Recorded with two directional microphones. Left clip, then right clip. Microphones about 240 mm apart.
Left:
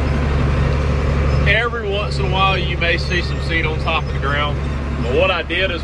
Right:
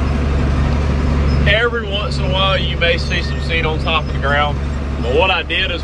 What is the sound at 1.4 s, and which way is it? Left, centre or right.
Speech, centre.